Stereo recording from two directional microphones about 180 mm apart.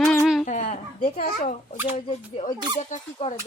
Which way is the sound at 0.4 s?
40° left (ahead or behind).